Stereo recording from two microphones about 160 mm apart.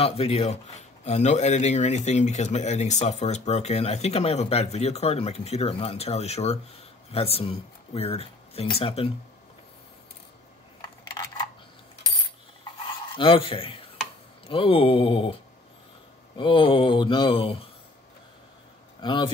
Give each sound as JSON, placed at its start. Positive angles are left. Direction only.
{"t": 0.0, "sound": "speech", "side_deg": 40}
{"t": 13.1, "sound": "mantra", "side_deg": 35}
{"t": 16.3, "sound": "mantra", "side_deg": 35}
{"t": 18.9, "sound": "speech", "side_deg": 30}